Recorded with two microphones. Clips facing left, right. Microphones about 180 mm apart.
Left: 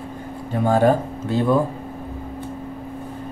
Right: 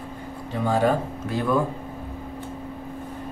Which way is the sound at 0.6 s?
50° left (ahead or behind).